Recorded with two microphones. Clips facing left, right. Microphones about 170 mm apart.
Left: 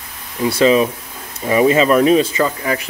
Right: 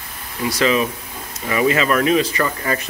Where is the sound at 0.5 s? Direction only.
30° left (ahead or behind).